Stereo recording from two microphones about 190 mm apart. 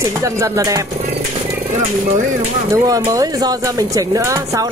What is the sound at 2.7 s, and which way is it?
Speech, 20° right (ahead or behind).